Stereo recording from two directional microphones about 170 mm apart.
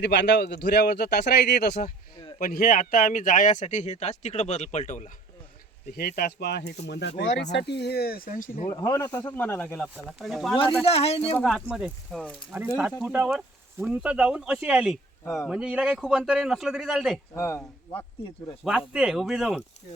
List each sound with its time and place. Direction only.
0.0 s speech: 90° left
2.4 s speech: 60° left (ahead or behind)
6.0 s speech: 65° left (ahead or behind); by 7.4 s 90° left
7.5 s speech: 80° left; by 8.7 s 50° left (ahead or behind)
8.7 s speech: 20° left (ahead or behind)
9.4 s speech: 10° left (ahead or behind)
9.9 s a man's voice: 5° right (ahead or behind)
10.8 s speech: 35° left (ahead or behind)
11.3 s a man's voice: centre (ahead or behind)
17.3 s speech: 15° left (ahead or behind)
18.6 s a man's voice: 5° right (ahead or behind)